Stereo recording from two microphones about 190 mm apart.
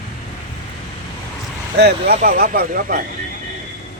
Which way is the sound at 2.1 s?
45° right (ahead or behind).